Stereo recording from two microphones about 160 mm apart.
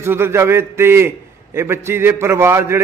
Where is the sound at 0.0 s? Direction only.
15° right (ahead or behind).